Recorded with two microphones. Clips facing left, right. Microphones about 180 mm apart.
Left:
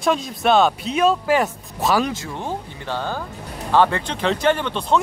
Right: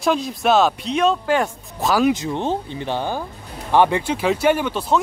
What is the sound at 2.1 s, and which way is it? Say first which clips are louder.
Speech: right 7 dB; 20° right (ahead or behind).